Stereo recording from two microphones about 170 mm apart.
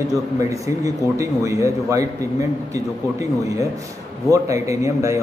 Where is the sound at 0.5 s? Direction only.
20° right (ahead or behind).